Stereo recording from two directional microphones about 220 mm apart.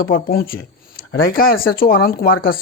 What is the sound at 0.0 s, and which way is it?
Speech, 40° left (ahead or behind).